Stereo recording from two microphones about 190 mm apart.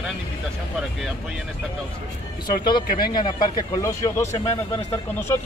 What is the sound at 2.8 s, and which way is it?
Speech, 50° left (ahead or behind).